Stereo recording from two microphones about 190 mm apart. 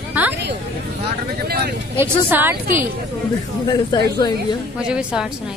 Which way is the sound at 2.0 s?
10° right (ahead or behind).